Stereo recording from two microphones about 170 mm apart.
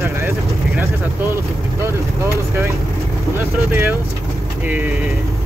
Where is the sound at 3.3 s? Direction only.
15° right (ahead or behind).